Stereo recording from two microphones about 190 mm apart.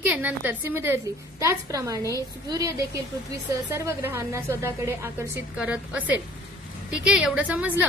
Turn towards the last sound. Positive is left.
turn(degrees=-5)  # may be behind; listen again after turning